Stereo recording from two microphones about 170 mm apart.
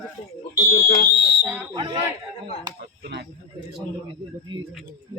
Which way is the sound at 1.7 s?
25° right (ahead or behind).